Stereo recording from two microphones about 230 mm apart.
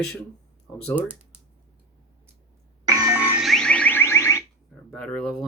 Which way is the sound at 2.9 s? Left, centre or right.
Centre.